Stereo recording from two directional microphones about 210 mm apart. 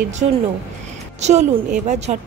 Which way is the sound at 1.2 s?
35° right (ahead or behind).